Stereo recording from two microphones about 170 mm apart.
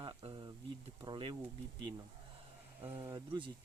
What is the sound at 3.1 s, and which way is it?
Speech, 25° right (ahead or behind).